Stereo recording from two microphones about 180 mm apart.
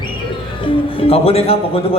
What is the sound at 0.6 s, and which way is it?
Speech, 30° left (ahead or behind).